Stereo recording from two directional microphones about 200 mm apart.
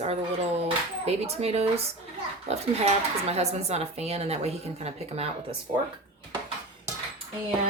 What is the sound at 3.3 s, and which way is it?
Speech, 30° right (ahead or behind).